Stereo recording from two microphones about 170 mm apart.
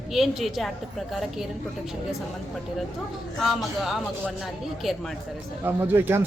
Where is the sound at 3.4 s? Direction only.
Centre (ahead or behind).